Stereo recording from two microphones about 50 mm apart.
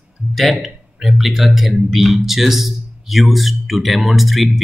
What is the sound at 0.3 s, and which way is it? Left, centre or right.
Speech, centre.